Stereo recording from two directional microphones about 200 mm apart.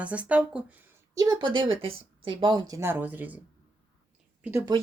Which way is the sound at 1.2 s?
20° right (ahead or behind).